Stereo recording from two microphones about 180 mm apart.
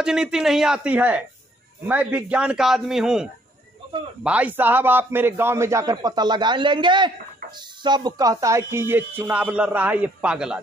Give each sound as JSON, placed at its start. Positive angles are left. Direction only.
{"t": 0.0, "sound": "a man's voice", "side_deg": -5}